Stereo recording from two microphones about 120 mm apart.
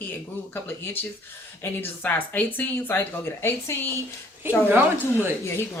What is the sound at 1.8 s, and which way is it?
Speech, 15° left (ahead or behind).